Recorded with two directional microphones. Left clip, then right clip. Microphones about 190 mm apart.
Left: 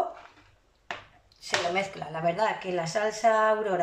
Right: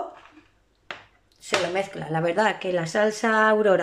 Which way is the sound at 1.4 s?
45° right (ahead or behind).